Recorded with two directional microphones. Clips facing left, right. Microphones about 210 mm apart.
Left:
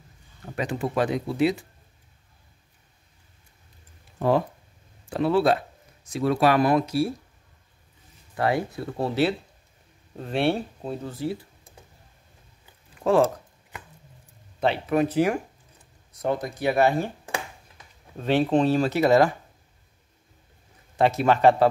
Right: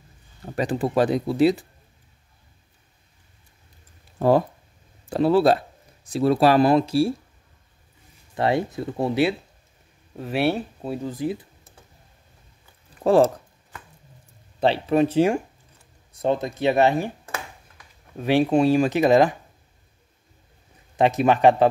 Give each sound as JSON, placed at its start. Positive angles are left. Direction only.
{"t": 0.5, "sound": "speech", "side_deg": -35}
{"t": 4.2, "sound": "speech", "side_deg": -40}
{"t": 8.4, "sound": "speech", "side_deg": -25}
{"t": 13.0, "sound": "speech", "side_deg": -35}
{"t": 14.6, "sound": "speech", "side_deg": -30}
{"t": 18.1, "sound": "speech", "side_deg": -10}
{"t": 20.9, "sound": "speech", "side_deg": -20}